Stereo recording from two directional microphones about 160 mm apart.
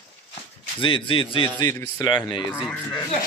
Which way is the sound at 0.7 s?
30° left (ahead or behind).